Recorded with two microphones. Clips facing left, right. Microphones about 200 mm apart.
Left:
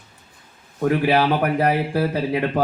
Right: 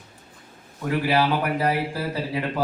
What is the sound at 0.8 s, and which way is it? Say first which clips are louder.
A man's voice: left 4 dB; 55° left (ahead or behind).